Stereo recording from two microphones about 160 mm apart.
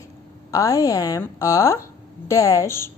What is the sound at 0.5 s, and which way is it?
A woman's voice, 20° left (ahead or behind).